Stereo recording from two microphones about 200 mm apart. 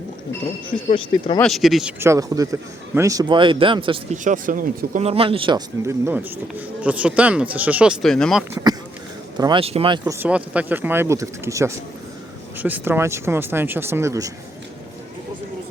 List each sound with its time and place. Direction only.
0.7 s speech: 25° left (ahead or behind)
1.4 s speech: centre (ahead or behind)
2.0 s speech: 15° right (ahead or behind)
4.2 s speech: 40° right (ahead or behind)
5.0 s speech: 30° right (ahead or behind); by 8.4 s centre (ahead or behind)
9.4 s speech: 25° right (ahead or behind)
10.0 s speech: 10° right (ahead or behind)